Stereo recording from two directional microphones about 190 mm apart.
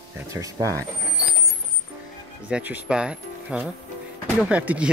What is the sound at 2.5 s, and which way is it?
Speech, 10° right (ahead or behind).